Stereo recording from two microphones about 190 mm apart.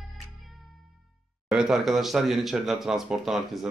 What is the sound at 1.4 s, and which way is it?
Speech, 5° right (ahead or behind).